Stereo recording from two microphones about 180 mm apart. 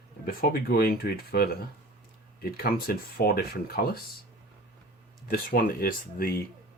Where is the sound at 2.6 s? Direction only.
55° left (ahead or behind).